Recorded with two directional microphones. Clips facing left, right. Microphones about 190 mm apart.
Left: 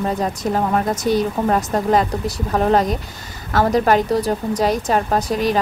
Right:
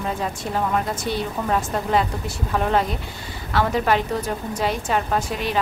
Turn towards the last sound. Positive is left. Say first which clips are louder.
# left 6 dB
turn(degrees=40)  # may be behind; listen again after turning